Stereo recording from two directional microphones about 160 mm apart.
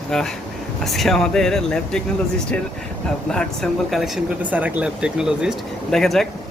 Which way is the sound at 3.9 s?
5° right (ahead or behind).